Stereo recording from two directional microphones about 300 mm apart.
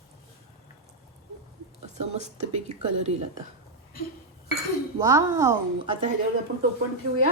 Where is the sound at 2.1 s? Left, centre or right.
Right.